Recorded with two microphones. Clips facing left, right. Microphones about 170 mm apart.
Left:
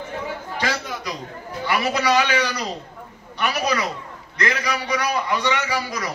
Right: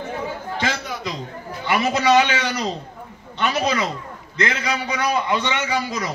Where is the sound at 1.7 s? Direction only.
25° right (ahead or behind).